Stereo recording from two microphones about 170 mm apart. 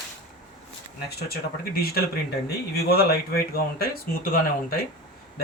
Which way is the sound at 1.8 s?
65° left (ahead or behind).